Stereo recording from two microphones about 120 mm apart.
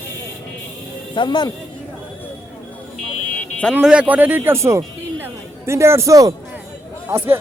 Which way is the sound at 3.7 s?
10° right (ahead or behind).